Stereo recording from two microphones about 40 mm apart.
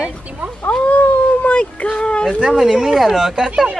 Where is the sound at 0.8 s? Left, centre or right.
Left.